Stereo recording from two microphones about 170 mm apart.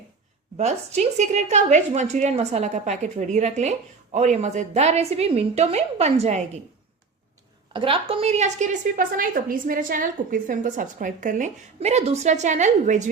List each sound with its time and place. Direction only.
0.5 s a woman's voice: 40° right (ahead or behind)
7.7 s a woman's voice: 30° right (ahead or behind)